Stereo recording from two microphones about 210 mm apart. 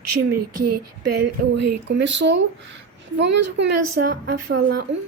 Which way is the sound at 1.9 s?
55° right (ahead or behind).